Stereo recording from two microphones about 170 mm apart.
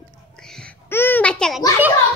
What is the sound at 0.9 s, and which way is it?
Babbling, 10° left (ahead or behind).